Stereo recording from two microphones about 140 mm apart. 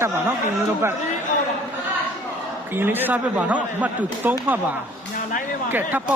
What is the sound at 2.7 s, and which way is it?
Speech, 15° right (ahead or behind).